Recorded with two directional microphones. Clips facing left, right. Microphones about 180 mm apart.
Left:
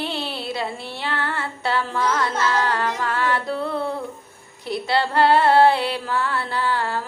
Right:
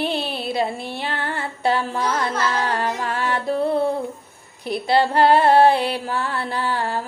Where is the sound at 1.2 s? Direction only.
15° right (ahead or behind).